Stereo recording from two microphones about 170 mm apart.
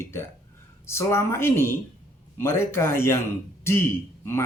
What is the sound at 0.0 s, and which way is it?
Speech, 15° left (ahead or behind).